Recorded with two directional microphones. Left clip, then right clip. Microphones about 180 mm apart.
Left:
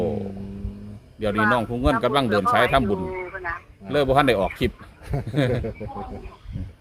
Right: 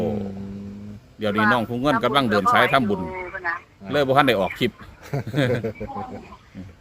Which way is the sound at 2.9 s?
20° right (ahead or behind).